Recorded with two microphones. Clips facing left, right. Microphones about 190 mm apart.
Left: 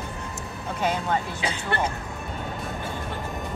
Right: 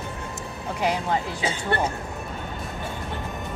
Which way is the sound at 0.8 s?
15° right (ahead or behind).